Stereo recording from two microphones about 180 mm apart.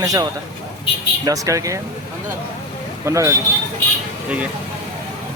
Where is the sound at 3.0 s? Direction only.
15° right (ahead or behind).